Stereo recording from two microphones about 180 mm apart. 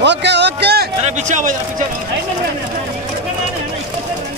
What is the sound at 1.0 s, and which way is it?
Speech, 40° right (ahead or behind).